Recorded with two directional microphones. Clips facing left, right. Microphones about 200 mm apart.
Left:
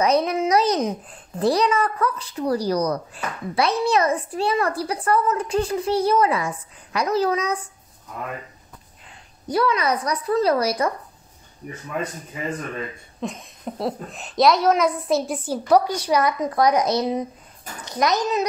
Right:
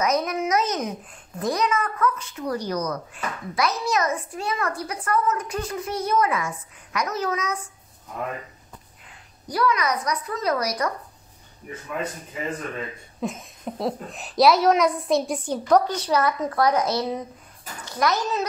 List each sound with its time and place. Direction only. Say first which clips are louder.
0.0 s a woman's voice: left 4 dB; 30° left (ahead or behind)
9.5 s a woman's voice: left 2 dB; 25° left (ahead or behind)
13.2 s a woman's voice: even; centre (ahead or behind); by 18.4 s 20° left (ahead or behind)